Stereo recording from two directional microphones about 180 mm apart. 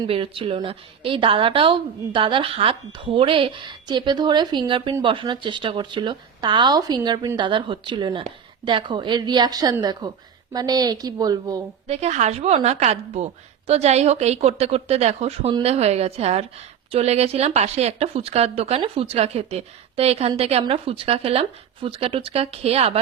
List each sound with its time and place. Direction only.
0.0 s a woman's voice: 30° right (ahead or behind)
11.9 s speech: 40° right (ahead or behind)